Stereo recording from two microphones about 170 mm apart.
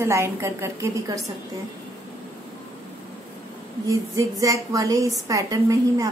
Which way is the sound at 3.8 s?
20° right (ahead or behind).